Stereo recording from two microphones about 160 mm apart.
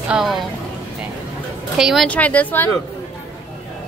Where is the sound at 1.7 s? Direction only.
Centre (ahead or behind).